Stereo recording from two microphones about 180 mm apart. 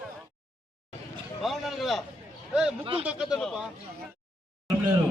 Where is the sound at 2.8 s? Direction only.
30° right (ahead or behind).